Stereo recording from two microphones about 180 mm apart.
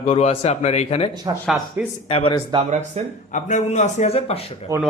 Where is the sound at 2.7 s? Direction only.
40° right (ahead or behind).